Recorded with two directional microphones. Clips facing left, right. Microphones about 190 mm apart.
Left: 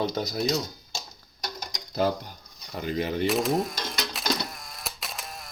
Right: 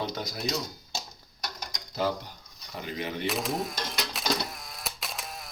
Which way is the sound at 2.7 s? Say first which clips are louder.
Left 6 dB; 40° left (ahead or behind).